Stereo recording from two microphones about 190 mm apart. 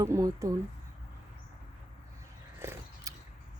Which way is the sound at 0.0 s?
15° right (ahead or behind).